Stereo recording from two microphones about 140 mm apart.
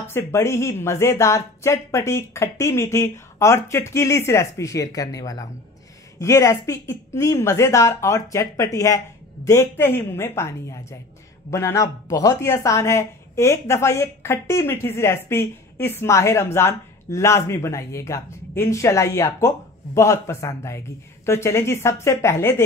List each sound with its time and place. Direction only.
0.0 s a woman's voice: 20° left (ahead or behind)